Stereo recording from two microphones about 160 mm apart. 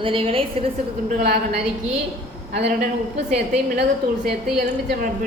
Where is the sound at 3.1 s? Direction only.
90° right.